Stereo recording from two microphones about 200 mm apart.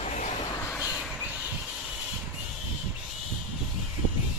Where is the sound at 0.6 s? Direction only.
15° left (ahead or behind).